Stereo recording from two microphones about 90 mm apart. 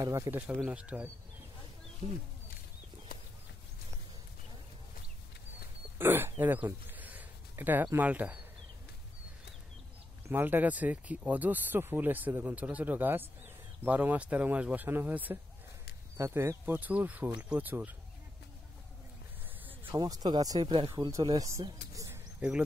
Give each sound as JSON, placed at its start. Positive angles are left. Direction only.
{"t": 0.0, "sound": "speech", "side_deg": -35}
{"t": 0.3, "sound": "speech", "side_deg": -20}
{"t": 5.9, "sound": "speech", "side_deg": -25}
{"t": 10.2, "sound": "speech", "side_deg": -20}
{"t": 20.0, "sound": "speech", "side_deg": -50}
{"t": 21.4, "sound": "speech", "side_deg": -35}
{"t": 21.9, "sound": "bird", "side_deg": -35}